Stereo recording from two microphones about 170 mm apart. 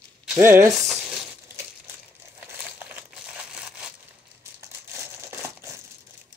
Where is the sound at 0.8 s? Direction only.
Centre (ahead or behind).